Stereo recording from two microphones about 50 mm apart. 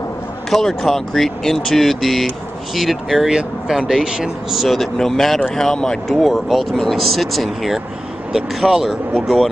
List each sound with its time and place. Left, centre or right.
0.5 s speech: centre
6.2 s speech: centre